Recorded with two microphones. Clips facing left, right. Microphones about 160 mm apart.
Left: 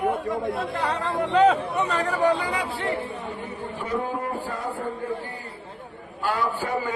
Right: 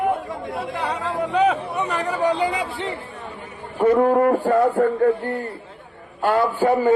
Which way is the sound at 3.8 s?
60° right (ahead or behind).